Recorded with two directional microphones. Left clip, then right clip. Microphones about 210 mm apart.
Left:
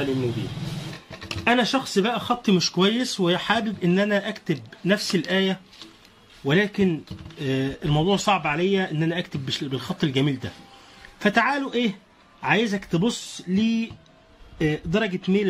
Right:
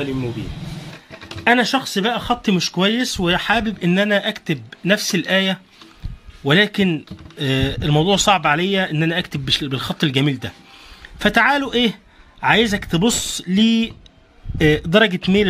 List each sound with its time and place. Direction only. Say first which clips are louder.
1.4 s speech: right 5 dB; 40° right (ahead or behind)